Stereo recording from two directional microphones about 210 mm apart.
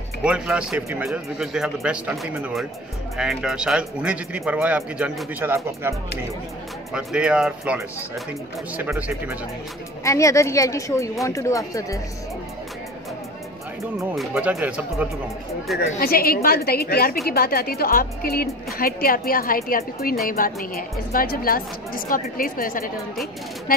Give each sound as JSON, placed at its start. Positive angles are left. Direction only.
{"t": 0.2, "sound": "speech", "side_deg": -5}
{"t": 6.9, "sound": "speech", "side_deg": 0}
{"t": 10.0, "sound": "speech", "side_deg": 15}
{"t": 13.9, "sound": "speech", "side_deg": 0}
{"t": 15.9, "sound": "a woman's voice", "side_deg": 45}